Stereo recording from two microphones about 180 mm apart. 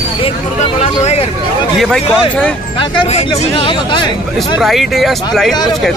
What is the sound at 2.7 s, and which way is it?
Speech, 30° left (ahead or behind).